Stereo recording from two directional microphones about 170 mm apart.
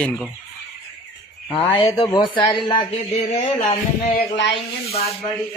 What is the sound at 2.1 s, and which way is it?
Speech, 30° left (ahead or behind).